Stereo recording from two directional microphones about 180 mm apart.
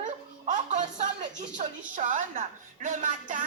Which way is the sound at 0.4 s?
40° right (ahead or behind).